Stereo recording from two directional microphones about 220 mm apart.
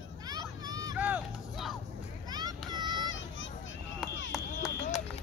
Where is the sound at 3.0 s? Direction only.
60° left (ahead or behind).